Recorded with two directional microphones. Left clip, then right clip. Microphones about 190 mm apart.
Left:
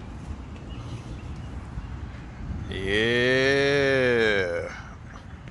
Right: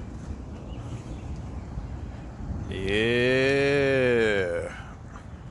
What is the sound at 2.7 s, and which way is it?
Moo, 20° right (ahead or behind).